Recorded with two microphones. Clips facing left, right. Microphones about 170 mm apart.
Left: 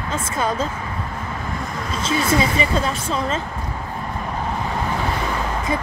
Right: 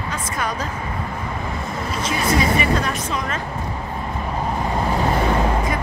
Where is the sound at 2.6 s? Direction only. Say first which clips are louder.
Even; 30° left (ahead or behind).